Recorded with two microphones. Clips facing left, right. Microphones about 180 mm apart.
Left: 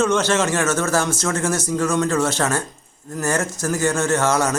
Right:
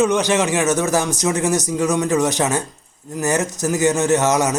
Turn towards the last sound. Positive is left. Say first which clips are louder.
# right 2 dB
turn(degrees=-20)  # may be behind; listen again after turning